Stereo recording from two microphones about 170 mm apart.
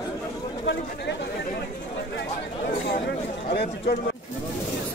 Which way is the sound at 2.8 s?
60° left (ahead or behind).